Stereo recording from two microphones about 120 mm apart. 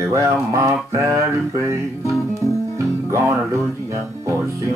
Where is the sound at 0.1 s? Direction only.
25° right (ahead or behind).